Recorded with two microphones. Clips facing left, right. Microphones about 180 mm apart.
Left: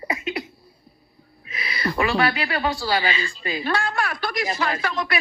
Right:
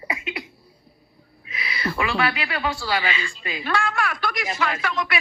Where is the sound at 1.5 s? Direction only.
40° left (ahead or behind).